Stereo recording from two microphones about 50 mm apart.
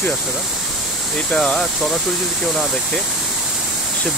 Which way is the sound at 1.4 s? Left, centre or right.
Centre.